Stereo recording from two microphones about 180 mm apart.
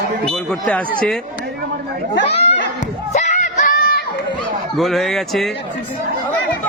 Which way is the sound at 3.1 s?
40° left (ahead or behind).